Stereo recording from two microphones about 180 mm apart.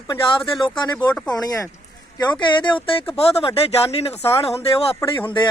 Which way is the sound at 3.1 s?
30° left (ahead or behind).